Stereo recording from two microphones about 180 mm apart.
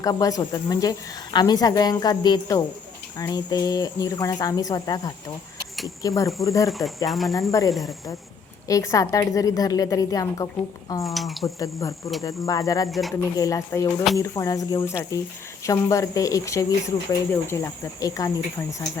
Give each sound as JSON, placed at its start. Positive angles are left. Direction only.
{"t": 0.0, "sound": "speech", "side_deg": 20}
{"t": 6.7, "sound": "speech", "side_deg": 0}
{"t": 8.6, "sound": "speech", "side_deg": 15}
{"t": 11.0, "sound": "speech", "side_deg": 0}
{"t": 11.4, "sound": "speech", "side_deg": 15}
{"t": 12.9, "sound": "speech", "side_deg": 0}
{"t": 13.3, "sound": "speech", "side_deg": 20}